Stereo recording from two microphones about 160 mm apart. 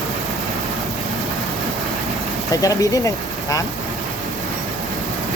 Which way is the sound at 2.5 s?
20° left (ahead or behind).